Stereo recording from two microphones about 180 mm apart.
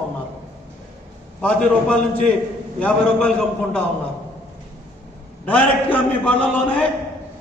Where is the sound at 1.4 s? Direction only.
5° left (ahead or behind).